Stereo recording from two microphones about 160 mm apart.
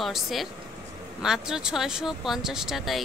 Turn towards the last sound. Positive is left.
turn(degrees=0)  # may be behind; listen again after turning